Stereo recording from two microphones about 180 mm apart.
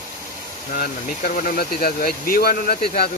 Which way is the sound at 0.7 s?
55° left (ahead or behind).